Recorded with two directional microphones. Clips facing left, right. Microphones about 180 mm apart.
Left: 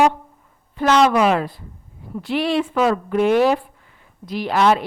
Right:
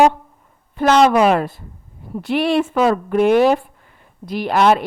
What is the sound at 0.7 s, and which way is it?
Speech, 55° right (ahead or behind).